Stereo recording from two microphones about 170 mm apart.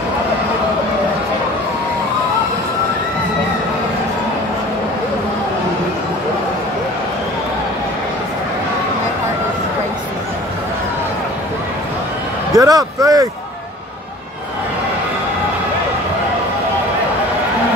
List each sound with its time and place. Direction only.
12.5 s speech: 20° right (ahead or behind)